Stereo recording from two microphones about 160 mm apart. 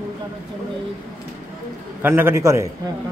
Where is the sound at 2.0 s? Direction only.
15° right (ahead or behind).